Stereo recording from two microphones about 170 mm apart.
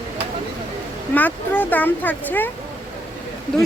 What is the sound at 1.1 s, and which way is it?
Speech, 10° left (ahead or behind).